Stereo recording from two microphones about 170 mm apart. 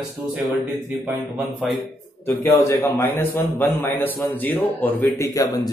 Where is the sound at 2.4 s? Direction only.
15° left (ahead or behind).